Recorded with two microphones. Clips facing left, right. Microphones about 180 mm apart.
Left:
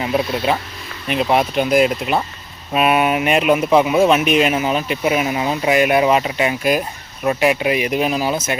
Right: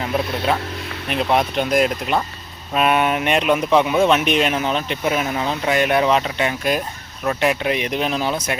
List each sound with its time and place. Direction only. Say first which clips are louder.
0.0 s speech: left 3 dB; 5° left (ahead or behind)